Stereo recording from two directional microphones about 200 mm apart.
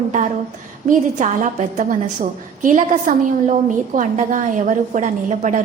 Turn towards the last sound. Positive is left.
turn(degrees=-35)  # may be behind; listen again after turning